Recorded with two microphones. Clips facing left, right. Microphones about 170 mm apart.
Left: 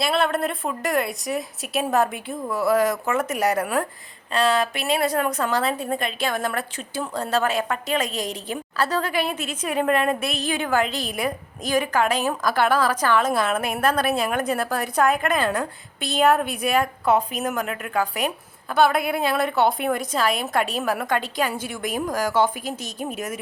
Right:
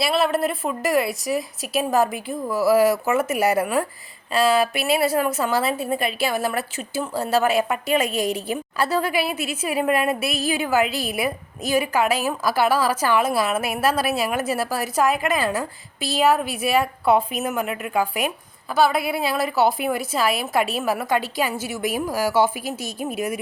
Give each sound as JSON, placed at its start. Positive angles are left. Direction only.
{"t": 0.0, "sound": "a woman's voice", "side_deg": -5}